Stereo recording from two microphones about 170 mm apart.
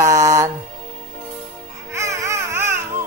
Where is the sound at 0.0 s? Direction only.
20° right (ahead or behind).